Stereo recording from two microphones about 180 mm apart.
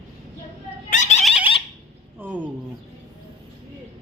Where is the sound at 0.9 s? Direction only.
40° left (ahead or behind).